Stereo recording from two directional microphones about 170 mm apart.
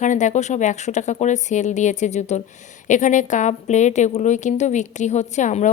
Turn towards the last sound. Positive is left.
turn(degrees=45)  # may be behind; listen again after turning